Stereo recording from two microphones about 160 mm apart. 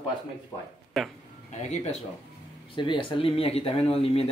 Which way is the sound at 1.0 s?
Centre (ahead or behind).